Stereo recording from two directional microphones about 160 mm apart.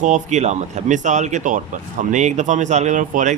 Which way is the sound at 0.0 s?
45° right (ahead or behind).